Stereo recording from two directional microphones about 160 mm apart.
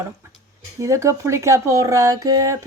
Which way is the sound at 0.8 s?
20° right (ahead or behind).